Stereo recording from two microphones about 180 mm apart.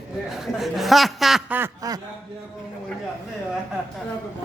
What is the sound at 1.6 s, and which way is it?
Speech, 20° right (ahead or behind).